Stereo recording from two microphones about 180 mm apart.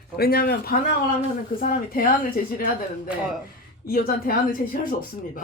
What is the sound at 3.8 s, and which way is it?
Speech, 55° left (ahead or behind).